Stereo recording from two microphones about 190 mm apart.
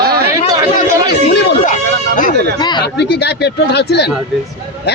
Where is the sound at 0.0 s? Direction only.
55° right (ahead or behind).